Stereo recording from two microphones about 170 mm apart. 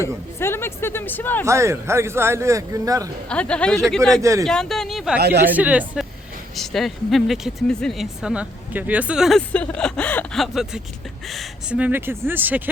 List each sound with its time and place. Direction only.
0.0 s speech: 15° left (ahead or behind)
1.5 s speech: 15° right (ahead or behind)
3.2 s speech: 5° left (ahead or behind)
4.2 s speech: 20° right (ahead or behind)
4.4 s speech: 5° left (ahead or behind)